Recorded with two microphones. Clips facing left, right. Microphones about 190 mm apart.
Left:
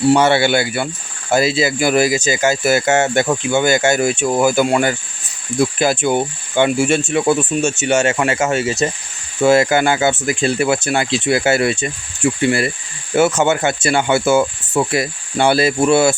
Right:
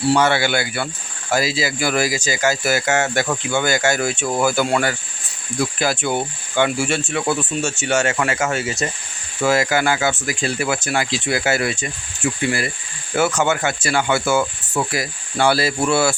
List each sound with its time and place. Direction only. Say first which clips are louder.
0.1 s speech: left 3 dB; 25° left (ahead or behind)